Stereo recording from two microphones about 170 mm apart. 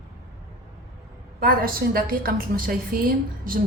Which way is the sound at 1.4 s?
60° right (ahead or behind).